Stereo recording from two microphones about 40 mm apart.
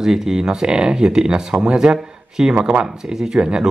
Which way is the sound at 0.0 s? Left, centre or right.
Centre.